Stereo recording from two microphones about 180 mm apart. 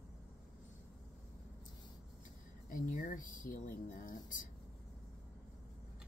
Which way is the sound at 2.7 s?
50° left (ahead or behind).